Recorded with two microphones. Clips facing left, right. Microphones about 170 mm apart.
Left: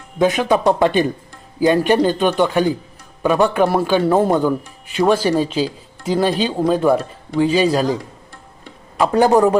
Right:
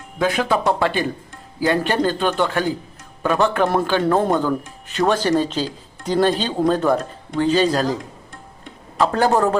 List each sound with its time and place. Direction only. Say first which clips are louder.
0.2 s a man's voice: left 4 dB; 20° left (ahead or behind)
9.0 s a man's voice: left 4 dB; 15° left (ahead or behind)